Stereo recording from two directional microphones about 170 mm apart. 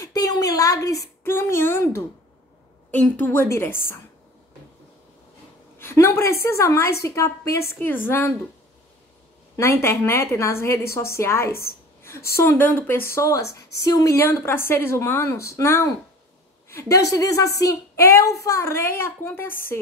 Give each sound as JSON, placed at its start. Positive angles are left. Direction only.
{"t": 0.0, "sound": "a sound", "side_deg": 20}
{"t": 1.2, "sound": "a woman's voice", "side_deg": 15}
{"t": 5.8, "sound": "a woman's voice", "side_deg": 15}
{"t": 9.6, "sound": "a woman's voice", "side_deg": 15}